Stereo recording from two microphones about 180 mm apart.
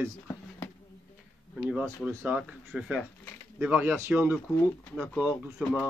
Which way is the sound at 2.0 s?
10° right (ahead or behind).